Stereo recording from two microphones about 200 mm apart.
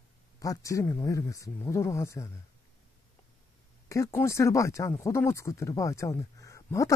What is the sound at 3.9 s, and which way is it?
Speech, 15° left (ahead or behind).